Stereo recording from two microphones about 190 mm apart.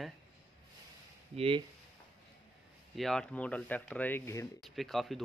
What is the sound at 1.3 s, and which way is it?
Speech, 30° right (ahead or behind).